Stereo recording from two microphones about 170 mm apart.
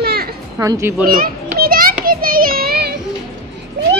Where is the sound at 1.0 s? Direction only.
55° right (ahead or behind).